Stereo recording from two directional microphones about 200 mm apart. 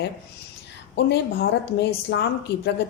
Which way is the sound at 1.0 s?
60° left (ahead or behind).